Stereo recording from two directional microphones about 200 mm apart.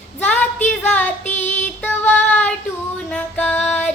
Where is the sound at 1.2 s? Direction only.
35° left (ahead or behind).